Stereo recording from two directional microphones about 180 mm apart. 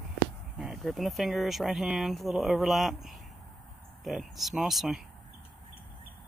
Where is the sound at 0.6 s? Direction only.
Centre (ahead or behind).